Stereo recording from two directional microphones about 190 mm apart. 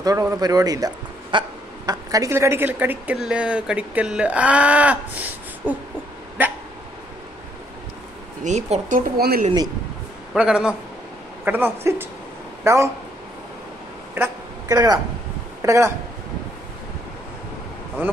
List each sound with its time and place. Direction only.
0.0 s a man's voice: 15° right (ahead or behind)
8.5 s speech: 35° right (ahead or behind)
10.3 s a man's voice: 5° right (ahead or behind)
14.1 s a sound: 15° right (ahead or behind)
15.6 s speech: 15° right (ahead or behind)